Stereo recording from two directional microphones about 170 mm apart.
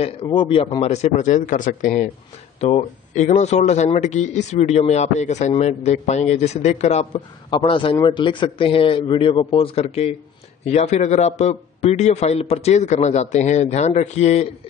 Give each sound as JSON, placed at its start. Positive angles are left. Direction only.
{"t": 0.0, "sound": "a man's voice", "side_deg": 30}
{"t": 2.6, "sound": "a man's voice", "side_deg": 40}